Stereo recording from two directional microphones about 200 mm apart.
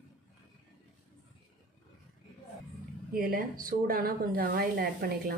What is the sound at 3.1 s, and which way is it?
Speech, 45° right (ahead or behind).